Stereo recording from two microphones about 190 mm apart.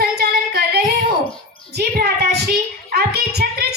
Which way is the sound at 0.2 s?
55° right (ahead or behind).